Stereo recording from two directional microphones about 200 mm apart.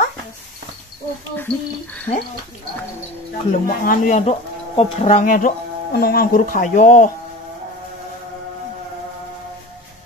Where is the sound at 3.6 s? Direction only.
45° left (ahead or behind).